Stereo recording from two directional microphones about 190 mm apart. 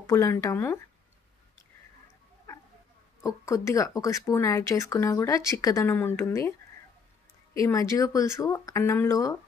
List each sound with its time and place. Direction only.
0.0 s speech: 15° left (ahead or behind)
3.2 s speech: 15° left (ahead or behind)
7.5 s speech: 15° left (ahead or behind)